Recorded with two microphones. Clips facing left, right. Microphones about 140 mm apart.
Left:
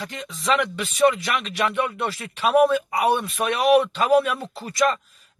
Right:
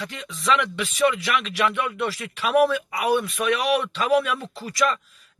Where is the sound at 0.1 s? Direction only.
35° left (ahead or behind).